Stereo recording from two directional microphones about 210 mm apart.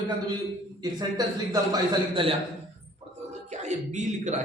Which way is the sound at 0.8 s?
20° right (ahead or behind).